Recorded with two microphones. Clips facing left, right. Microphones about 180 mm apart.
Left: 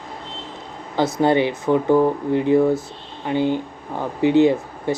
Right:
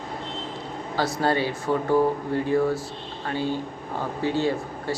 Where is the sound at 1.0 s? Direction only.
20° left (ahead or behind).